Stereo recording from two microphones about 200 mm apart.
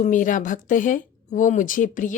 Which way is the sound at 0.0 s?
40° left (ahead or behind).